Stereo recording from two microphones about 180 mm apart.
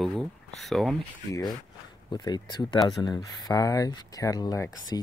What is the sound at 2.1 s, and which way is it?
Speech, 25° left (ahead or behind).